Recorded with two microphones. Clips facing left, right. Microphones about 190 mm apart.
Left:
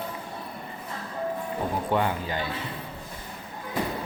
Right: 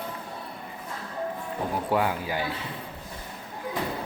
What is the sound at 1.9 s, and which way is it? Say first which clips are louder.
Speech: right 1 dB; 5° right (ahead or behind).